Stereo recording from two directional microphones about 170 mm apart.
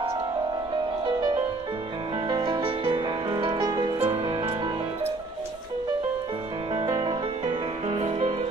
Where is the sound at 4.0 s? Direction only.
35° right (ahead or behind).